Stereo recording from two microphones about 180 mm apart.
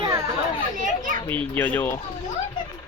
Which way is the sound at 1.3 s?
10° left (ahead or behind).